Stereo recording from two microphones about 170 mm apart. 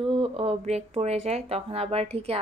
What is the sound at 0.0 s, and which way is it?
Speech, 35° right (ahead or behind).